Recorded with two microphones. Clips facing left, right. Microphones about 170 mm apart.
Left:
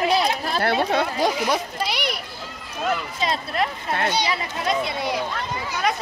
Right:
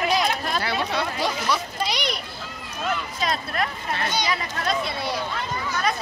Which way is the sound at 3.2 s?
25° left (ahead or behind).